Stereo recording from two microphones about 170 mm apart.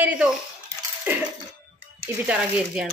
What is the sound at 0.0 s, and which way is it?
Speech, 5° right (ahead or behind).